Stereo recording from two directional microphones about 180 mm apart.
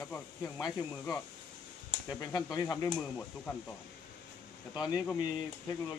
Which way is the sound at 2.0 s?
20° left (ahead or behind).